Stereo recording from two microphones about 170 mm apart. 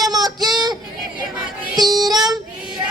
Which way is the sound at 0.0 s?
25° right (ahead or behind).